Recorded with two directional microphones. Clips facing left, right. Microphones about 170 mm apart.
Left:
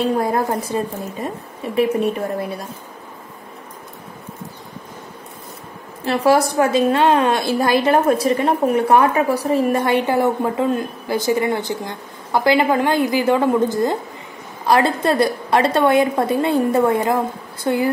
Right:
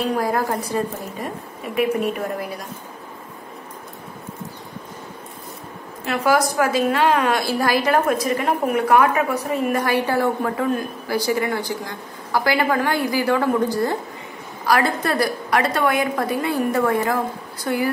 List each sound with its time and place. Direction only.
0.0 s a woman's voice: 25° left (ahead or behind)
6.0 s a woman's voice: 30° left (ahead or behind)